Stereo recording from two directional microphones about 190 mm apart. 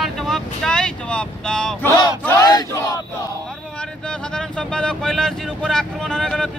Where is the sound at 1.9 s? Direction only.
15° left (ahead or behind).